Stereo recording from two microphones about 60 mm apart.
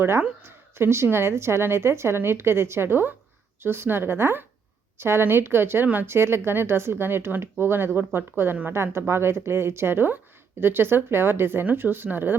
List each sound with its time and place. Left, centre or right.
0.4 s a woman's voice: right